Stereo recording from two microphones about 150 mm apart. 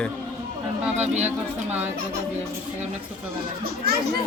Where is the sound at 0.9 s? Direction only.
50° right (ahead or behind).